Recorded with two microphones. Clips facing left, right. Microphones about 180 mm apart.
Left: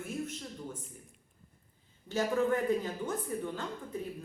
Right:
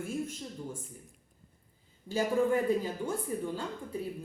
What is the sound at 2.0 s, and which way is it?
A woman's voice, 10° right (ahead or behind).